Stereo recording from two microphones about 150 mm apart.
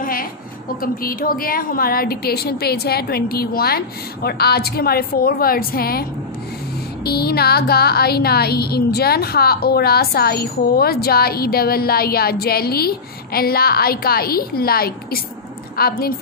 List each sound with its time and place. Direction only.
0.0 s a sound: 70° left (ahead or behind)
1.0 s speech: 70° left (ahead or behind)
7.1 s speech: 90° left